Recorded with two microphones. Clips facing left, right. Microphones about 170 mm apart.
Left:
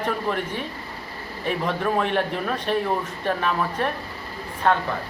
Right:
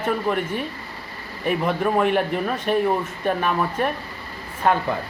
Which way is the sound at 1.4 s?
5° right (ahead or behind).